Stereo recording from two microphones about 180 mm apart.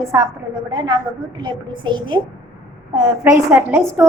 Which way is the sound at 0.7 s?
25° right (ahead or behind).